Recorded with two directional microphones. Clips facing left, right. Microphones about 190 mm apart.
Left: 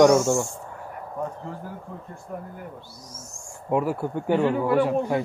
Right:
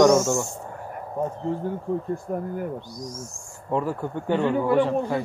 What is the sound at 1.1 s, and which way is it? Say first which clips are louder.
Speech: right 6 dB; 25° right (ahead or behind).